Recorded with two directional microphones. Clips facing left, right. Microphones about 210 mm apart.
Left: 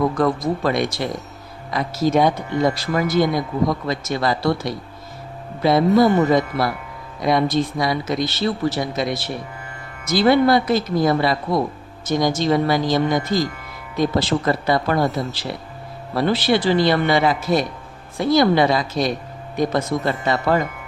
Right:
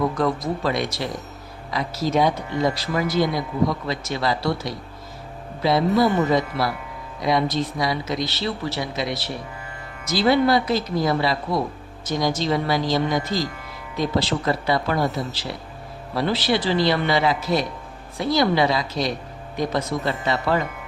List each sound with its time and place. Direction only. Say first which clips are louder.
0.2 s speech: left 3 dB; 50° left (ahead or behind)